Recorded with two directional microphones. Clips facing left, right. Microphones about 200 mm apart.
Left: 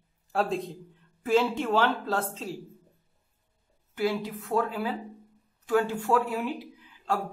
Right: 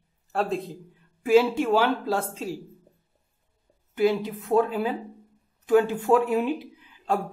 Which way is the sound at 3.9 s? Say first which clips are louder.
Right 6 dB; 20° right (ahead or behind).